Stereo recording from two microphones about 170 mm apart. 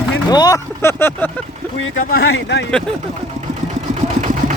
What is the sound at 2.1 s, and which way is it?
Speech, 70° left (ahead or behind).